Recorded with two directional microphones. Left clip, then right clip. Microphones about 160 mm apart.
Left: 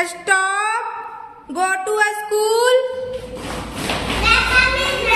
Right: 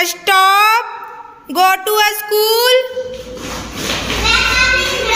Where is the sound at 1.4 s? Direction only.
15° right (ahead or behind).